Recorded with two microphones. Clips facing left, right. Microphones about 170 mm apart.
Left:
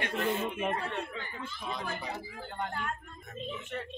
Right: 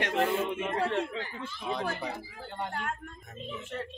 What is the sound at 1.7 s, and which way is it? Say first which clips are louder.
Speech: right 5 dB; 65° right (ahead or behind).